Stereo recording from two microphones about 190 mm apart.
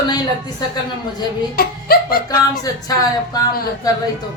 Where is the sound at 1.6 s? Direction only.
50° left (ahead or behind).